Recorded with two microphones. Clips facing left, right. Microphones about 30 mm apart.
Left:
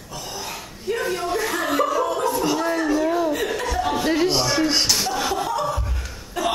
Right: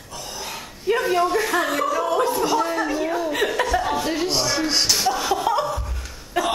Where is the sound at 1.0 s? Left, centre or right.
Centre.